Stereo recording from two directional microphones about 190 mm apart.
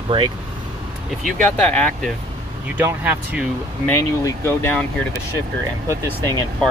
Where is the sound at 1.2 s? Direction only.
5° left (ahead or behind).